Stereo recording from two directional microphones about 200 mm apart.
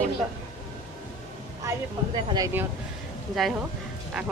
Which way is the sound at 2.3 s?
15° right (ahead or behind).